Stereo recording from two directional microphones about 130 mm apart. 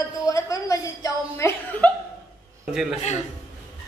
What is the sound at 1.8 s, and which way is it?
Chuckle, 10° left (ahead or behind).